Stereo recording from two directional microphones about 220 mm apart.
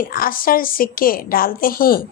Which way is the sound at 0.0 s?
40° left (ahead or behind).